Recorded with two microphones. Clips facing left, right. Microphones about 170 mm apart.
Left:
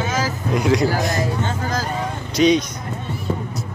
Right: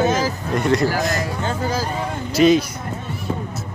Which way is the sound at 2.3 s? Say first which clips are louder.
Right 1 dB; centre (ahead or behind).